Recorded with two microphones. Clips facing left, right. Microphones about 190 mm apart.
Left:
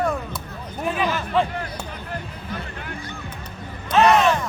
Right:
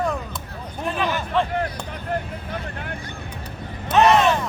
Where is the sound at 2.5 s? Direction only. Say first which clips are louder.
Even; 60° right (ahead or behind).